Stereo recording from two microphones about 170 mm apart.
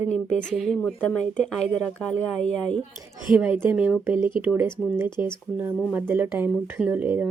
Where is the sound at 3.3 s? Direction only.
10° right (ahead or behind).